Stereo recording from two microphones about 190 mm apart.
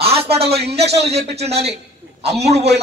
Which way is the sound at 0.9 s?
35° right (ahead or behind).